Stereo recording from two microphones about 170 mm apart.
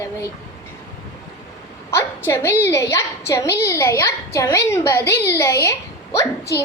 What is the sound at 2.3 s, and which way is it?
A woman's voice, 15° left (ahead or behind).